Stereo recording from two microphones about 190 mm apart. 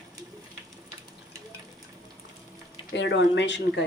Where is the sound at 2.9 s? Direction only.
70° left (ahead or behind).